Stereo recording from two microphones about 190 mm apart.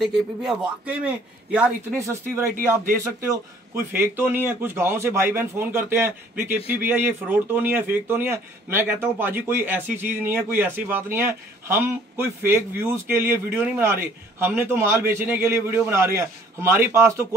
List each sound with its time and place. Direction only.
0.0 s speech: centre (ahead or behind)
2.5 s speech: 45° right (ahead or behind)
3.0 s speech: 15° right (ahead or behind)